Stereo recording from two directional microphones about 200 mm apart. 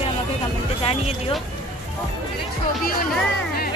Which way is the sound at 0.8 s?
30° left (ahead or behind).